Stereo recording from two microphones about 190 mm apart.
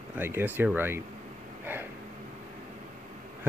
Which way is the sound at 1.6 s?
10° right (ahead or behind).